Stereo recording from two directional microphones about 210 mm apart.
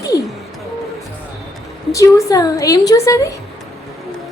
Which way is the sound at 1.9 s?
15° left (ahead or behind).